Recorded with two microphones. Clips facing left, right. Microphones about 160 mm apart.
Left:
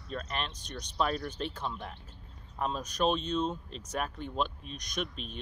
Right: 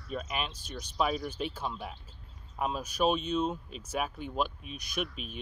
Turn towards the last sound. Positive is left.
turn(degrees=-5)  # may be behind; listen again after turning